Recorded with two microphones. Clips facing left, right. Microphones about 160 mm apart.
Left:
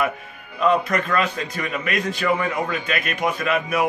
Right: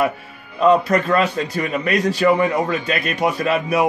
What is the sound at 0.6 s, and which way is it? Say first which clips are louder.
A man's voice: right 5 dB; 35° right (ahead or behind).